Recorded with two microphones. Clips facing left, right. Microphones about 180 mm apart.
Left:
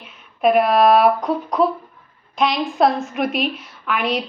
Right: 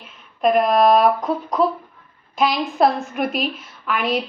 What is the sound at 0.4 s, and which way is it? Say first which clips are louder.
A woman's voice: left 1 dB; 5° left (ahead or behind).